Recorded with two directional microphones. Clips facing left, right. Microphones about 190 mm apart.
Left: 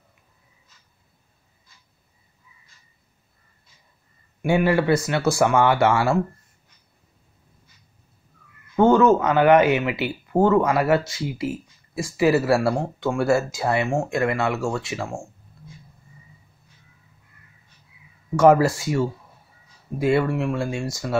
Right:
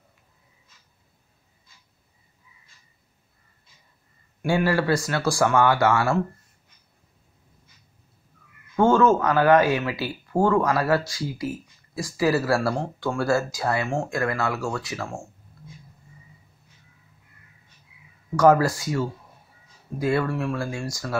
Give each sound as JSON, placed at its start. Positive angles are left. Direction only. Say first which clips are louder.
{"t": 4.5, "sound": "speech", "louder": "left 3 dB", "side_deg": 20}
{"t": 8.7, "sound": "speech", "louder": "left 2 dB", "side_deg": 20}
{"t": 18.3, "sound": "speech", "louder": "left 2 dB", "side_deg": 25}